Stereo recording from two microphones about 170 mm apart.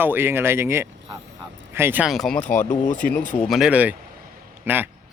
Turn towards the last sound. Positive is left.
turn(degrees=-10)  # may be behind; listen again after turning